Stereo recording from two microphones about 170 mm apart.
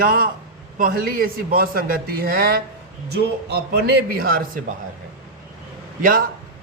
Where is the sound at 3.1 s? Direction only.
70° right (ahead or behind).